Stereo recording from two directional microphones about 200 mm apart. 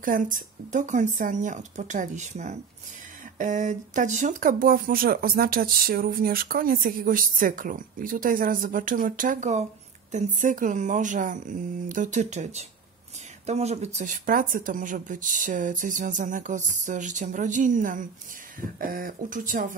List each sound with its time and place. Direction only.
0.0 s speech: 40° right (ahead or behind)